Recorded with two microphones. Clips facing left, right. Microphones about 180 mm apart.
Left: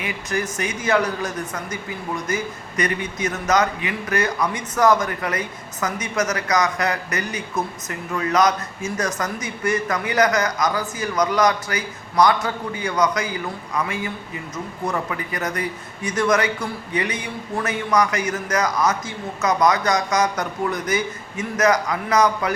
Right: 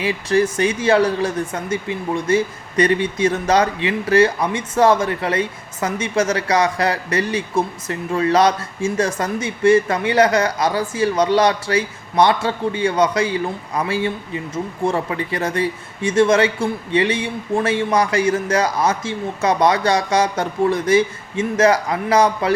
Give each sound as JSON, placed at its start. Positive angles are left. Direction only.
{"t": 0.0, "sound": "speech", "side_deg": -30}